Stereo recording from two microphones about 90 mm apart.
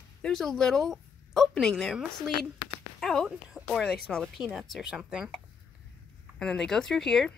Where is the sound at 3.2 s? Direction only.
10° right (ahead or behind).